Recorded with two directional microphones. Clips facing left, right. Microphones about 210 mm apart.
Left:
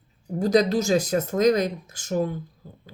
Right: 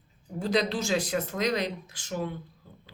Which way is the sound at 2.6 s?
40° left (ahead or behind).